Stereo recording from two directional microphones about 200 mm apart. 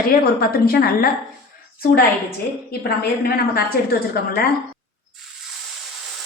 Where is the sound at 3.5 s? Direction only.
50° left (ahead or behind).